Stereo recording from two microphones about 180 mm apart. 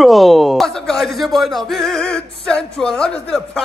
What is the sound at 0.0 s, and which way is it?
Speech, centre (ahead or behind).